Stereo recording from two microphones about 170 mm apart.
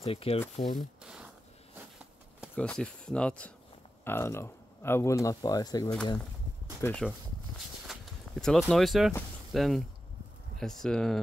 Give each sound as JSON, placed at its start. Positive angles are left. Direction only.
{"t": 0.0, "sound": "speech", "side_deg": 35}
{"t": 0.7, "sound": "zipper", "side_deg": -5}
{"t": 2.5, "sound": "speech", "side_deg": 5}
{"t": 6.8, "sound": "speech", "side_deg": 10}
{"t": 7.8, "sound": "a sound", "side_deg": 0}
{"t": 9.5, "sound": "speech", "side_deg": 0}